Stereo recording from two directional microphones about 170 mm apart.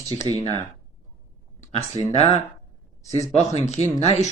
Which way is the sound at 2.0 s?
40° left (ahead or behind).